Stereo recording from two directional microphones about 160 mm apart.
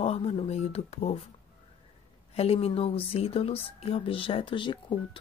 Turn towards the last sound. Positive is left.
turn(degrees=30)  # may be behind; listen again after turning